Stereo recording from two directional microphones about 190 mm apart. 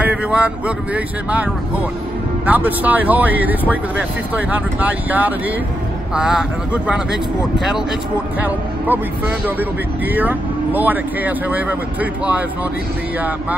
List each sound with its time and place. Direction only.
0.0 s speech: 5° right (ahead or behind)